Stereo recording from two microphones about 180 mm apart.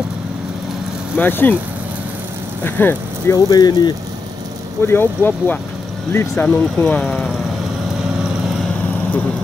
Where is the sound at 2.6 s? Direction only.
10° left (ahead or behind).